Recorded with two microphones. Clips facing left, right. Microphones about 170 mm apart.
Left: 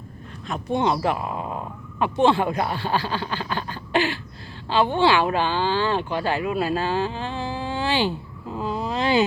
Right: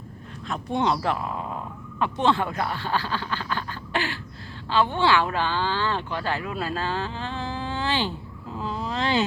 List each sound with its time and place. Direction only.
0.4 s speech: centre (ahead or behind)